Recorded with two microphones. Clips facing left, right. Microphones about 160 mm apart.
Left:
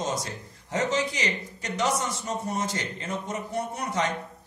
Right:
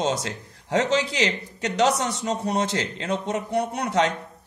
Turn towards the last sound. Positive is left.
turn(degrees=-75)  # may be behind; listen again after turning